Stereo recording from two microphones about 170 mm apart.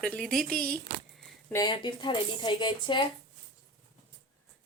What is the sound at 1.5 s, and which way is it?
Speech, 25° left (ahead or behind).